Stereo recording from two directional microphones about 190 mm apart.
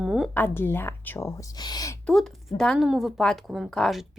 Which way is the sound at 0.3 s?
10° left (ahead or behind).